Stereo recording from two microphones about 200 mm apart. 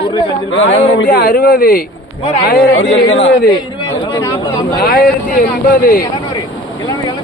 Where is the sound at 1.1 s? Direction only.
50° left (ahead or behind).